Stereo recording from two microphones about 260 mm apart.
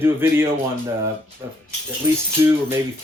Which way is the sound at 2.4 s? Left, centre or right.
Centre.